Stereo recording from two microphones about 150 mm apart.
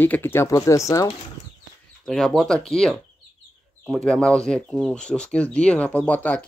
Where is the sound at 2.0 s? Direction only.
5° left (ahead or behind).